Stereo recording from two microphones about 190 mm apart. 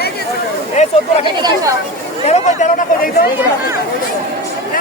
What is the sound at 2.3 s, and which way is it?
Speech, 40° left (ahead or behind).